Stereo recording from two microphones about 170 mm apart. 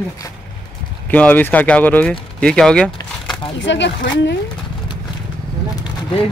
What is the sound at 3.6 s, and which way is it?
Speech, 90° left.